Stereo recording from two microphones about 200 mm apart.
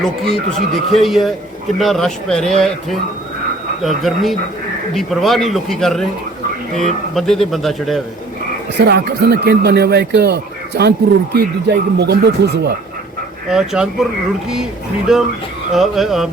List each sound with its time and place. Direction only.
0.0 s speech: centre (ahead or behind)
8.8 s speech: 55° right (ahead or behind)
13.5 s speech: 5° right (ahead or behind)
15.1 s speech: centre (ahead or behind)